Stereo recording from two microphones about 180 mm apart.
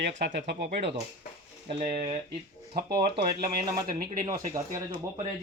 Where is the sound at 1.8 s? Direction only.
50° right (ahead or behind).